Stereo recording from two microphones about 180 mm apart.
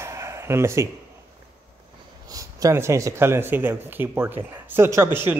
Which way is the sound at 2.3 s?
20° right (ahead or behind).